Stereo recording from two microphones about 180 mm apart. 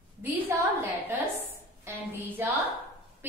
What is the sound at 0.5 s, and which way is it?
Speech, 15° right (ahead or behind).